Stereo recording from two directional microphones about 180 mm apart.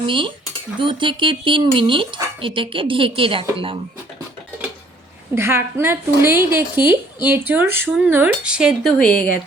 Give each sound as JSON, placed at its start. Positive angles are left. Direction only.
{"t": 0.0, "sound": "speech", "side_deg": -30}
{"t": 5.3, "sound": "a woman's voice", "side_deg": -15}